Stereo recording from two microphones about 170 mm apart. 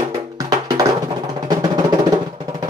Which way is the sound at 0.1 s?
20° right (ahead or behind).